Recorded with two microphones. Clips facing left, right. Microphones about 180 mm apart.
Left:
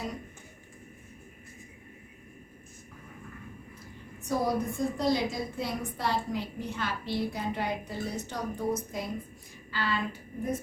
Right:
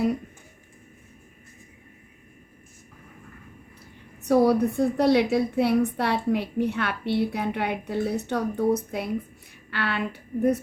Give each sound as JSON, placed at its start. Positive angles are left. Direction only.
{"t": 4.2, "sound": "a woman's voice", "side_deg": -70}